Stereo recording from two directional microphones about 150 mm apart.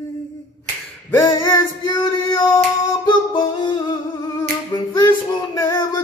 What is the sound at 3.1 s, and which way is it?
Singing, 30° left (ahead or behind).